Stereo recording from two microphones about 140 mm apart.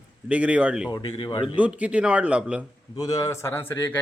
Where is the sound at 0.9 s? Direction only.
35° left (ahead or behind).